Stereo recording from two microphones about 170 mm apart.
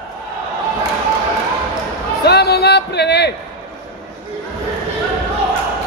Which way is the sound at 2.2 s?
75° left (ahead or behind).